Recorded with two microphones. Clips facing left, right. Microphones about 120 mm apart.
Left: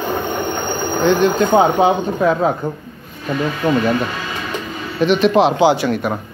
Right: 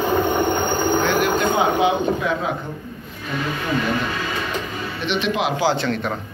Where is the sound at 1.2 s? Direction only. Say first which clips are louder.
Left 6 dB; 40° left (ahead or behind).